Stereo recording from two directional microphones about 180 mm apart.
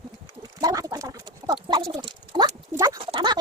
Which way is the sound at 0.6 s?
20° right (ahead or behind).